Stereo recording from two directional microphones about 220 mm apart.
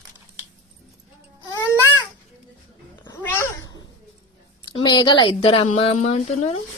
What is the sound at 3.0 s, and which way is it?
Babbling, 10° left (ahead or behind).